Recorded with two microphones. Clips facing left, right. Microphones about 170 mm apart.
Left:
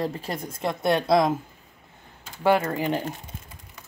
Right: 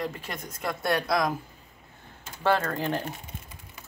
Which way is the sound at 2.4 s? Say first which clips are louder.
Left 4 dB; 10° left (ahead or behind).